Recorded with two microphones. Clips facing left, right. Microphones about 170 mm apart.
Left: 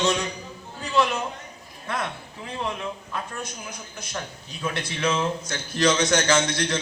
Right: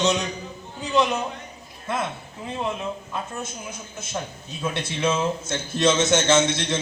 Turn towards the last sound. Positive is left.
turn(degrees=-25)  # may be behind; listen again after turning